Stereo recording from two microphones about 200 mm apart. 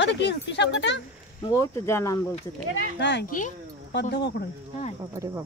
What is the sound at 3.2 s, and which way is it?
Speech, 40° left (ahead or behind).